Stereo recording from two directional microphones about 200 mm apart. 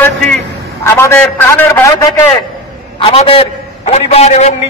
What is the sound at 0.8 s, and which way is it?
A man's voice, 10° left (ahead or behind).